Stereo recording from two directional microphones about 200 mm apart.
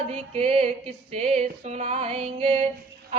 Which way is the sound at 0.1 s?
30° right (ahead or behind).